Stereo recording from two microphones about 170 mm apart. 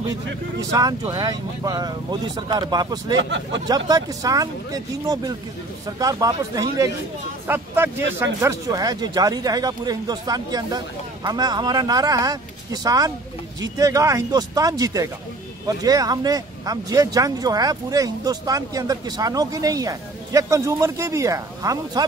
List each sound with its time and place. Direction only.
0.7 s speech: 20° right (ahead or behind)
3.2 s speech: 90° right
3.6 s speech: 20° right (ahead or behind)